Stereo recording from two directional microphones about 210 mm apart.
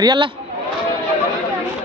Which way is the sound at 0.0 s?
20° right (ahead or behind).